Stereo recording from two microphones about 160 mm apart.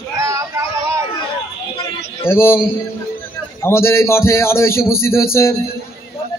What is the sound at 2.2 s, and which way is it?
Speech, 15° left (ahead or behind).